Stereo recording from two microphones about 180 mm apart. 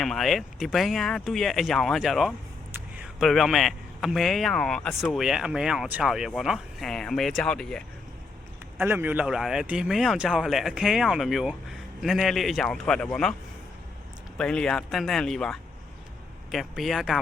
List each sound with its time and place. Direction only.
0.0 s speech: centre (ahead or behind)
8.8 s speech: 10° right (ahead or behind)
14.3 s speech: 5° left (ahead or behind)